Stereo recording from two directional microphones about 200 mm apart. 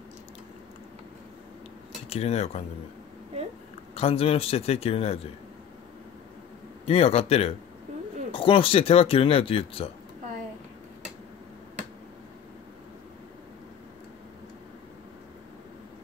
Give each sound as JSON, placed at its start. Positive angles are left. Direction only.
{"t": 2.0, "sound": "speech", "side_deg": 30}
{"t": 3.9, "sound": "speech", "side_deg": 30}
{"t": 6.9, "sound": "speech", "side_deg": 30}